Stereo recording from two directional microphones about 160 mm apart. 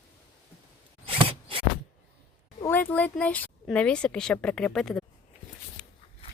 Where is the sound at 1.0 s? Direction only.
35° right (ahead or behind).